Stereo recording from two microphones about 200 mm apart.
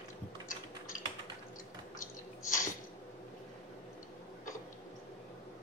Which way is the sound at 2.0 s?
40° left (ahead or behind).